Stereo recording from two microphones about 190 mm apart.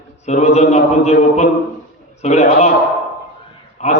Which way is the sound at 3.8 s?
35° left (ahead or behind).